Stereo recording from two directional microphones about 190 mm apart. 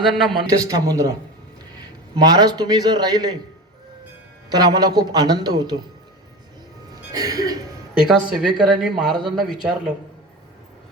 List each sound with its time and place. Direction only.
0.3 s a man's voice: 20° right (ahead or behind)
4.4 s speech: 20° right (ahead or behind)
7.1 s speech: 20° right (ahead or behind)
8.0 s speech: centre (ahead or behind)